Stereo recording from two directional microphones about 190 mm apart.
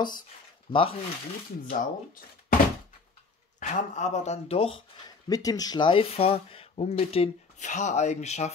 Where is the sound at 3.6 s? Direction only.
40° left (ahead or behind).